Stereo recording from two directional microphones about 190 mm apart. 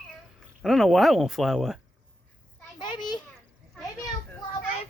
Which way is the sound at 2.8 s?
25° left (ahead or behind).